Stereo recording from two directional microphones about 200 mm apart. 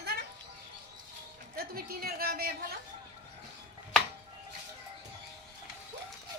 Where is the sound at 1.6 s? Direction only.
50° right (ahead or behind).